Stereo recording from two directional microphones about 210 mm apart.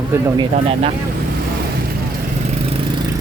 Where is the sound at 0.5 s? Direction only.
30° right (ahead or behind).